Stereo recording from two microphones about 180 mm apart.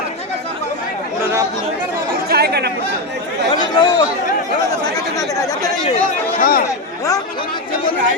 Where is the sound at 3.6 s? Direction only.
20° left (ahead or behind).